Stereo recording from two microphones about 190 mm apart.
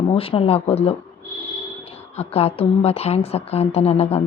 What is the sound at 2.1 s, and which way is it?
Speech, 30° left (ahead or behind).